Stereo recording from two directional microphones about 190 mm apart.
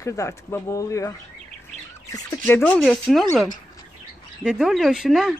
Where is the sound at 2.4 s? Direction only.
5° left (ahead or behind).